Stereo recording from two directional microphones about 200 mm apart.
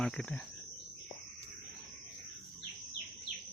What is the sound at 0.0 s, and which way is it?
Speech, 5° left (ahead or behind).